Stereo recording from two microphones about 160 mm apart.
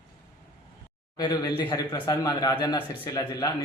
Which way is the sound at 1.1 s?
25° left (ahead or behind).